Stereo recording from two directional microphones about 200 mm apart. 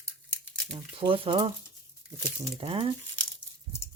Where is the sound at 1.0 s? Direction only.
25° right (ahead or behind).